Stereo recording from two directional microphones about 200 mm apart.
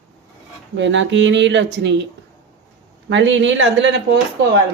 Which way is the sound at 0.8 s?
65° right (ahead or behind).